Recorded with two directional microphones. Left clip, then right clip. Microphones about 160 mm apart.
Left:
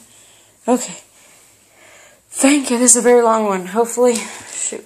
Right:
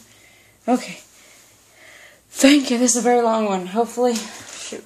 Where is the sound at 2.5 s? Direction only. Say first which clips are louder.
Even; 15° right (ahead or behind).